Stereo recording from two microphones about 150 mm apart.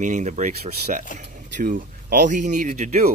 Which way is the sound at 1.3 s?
65° right (ahead or behind).